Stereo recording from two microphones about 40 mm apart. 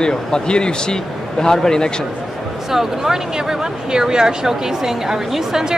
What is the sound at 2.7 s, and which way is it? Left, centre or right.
A woman's voice, centre.